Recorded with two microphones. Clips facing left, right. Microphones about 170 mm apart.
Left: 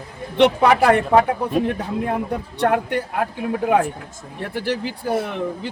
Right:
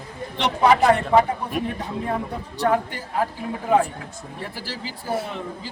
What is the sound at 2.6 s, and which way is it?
Speech, 65° left (ahead or behind).